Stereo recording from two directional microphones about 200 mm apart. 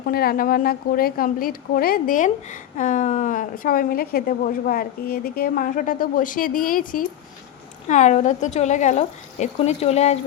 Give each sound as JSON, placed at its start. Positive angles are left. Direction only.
{"t": 0.0, "sound": "a woman's voice", "side_deg": 50}